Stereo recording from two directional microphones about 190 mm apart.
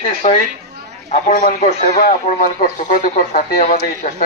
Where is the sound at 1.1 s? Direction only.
40° left (ahead or behind).